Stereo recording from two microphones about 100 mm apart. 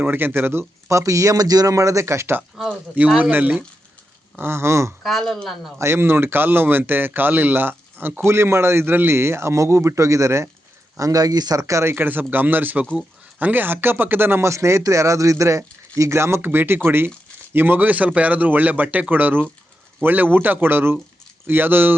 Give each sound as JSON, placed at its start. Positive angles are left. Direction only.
{"t": 0.0, "sound": "a man's voice", "side_deg": -20}
{"t": 5.0, "sound": "speech", "side_deg": 0}
{"t": 5.8, "sound": "speech", "side_deg": -25}